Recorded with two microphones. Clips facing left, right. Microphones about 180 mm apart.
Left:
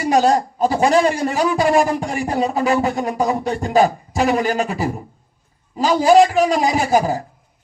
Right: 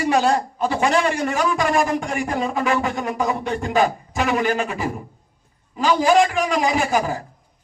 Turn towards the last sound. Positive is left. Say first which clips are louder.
# left 4 dB
turn(degrees=35)  # may be behind; listen again after turning